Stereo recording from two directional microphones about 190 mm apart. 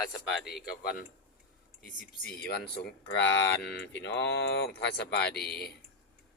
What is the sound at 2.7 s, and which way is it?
Speech, 65° left (ahead or behind).